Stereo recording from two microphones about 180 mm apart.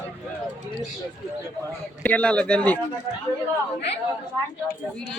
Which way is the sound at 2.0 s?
5° left (ahead or behind).